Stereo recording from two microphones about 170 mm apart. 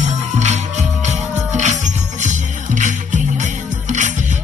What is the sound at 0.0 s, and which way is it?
Music, 40° right (ahead or behind).